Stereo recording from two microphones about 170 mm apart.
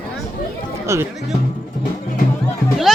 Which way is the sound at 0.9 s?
15° right (ahead or behind).